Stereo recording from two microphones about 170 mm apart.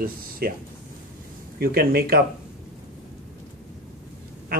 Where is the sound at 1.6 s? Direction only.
65° right (ahead or behind).